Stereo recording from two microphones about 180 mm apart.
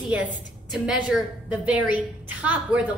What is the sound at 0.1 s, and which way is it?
A woman's voice, 5° right (ahead or behind).